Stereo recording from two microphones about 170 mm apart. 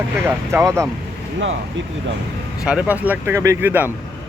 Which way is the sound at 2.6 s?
5° right (ahead or behind).